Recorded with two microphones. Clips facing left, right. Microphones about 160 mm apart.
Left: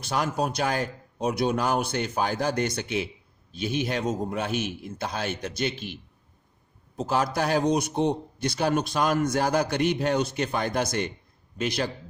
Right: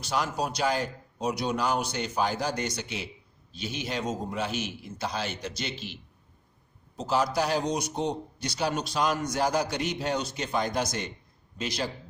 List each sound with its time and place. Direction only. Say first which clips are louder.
0.0 s a man's voice: left 3 dB; 55° left (ahead or behind)